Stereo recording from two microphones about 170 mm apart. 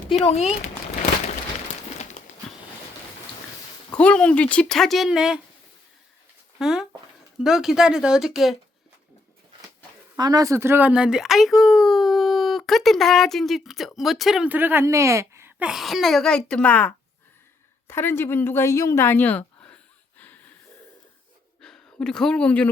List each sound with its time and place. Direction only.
0.2 s speech: 40° left (ahead or behind)
3.9 s speech: 5° left (ahead or behind)
6.6 s speech: 5° right (ahead or behind)
10.2 s speech: 25° right (ahead or behind); by 20.4 s 10° left (ahead or behind)
21.6 s speech: 5° left (ahead or behind)